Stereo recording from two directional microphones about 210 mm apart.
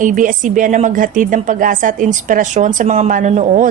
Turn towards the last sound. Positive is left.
turn(degrees=-35)  # may be behind; listen again after turning